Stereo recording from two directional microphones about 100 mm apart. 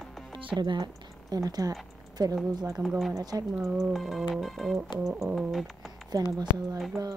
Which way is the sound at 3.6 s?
Centre (ahead or behind).